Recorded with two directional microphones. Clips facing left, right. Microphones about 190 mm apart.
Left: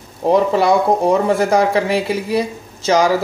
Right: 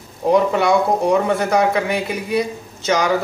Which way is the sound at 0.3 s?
30° left (ahead or behind).